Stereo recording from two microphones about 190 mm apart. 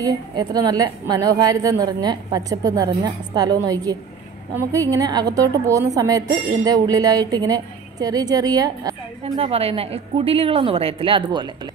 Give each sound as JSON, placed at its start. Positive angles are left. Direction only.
{"t": 0.0, "sound": "speech", "side_deg": -20}
{"t": 9.2, "sound": "a woman's voice", "side_deg": -30}